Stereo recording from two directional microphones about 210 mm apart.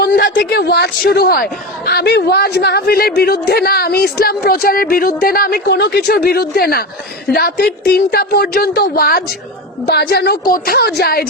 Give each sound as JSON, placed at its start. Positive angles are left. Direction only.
{"t": 0.0, "sound": "speech", "side_deg": 45}